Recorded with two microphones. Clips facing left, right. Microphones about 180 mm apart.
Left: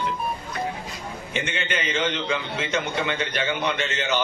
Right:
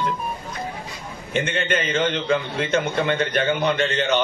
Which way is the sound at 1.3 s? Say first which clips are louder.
Right 6 dB; 50° right (ahead or behind).